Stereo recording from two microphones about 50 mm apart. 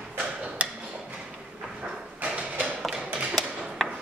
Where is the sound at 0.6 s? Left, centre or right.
Right.